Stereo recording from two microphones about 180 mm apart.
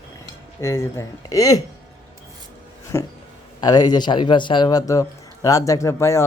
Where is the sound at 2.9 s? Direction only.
15° left (ahead or behind).